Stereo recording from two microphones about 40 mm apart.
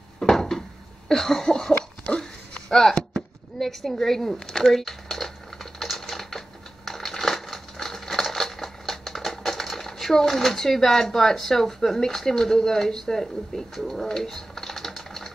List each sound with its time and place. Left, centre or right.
0.2 s a sound: centre
2.0 s pig: left
2.7 s speech: centre
4.6 s typing: centre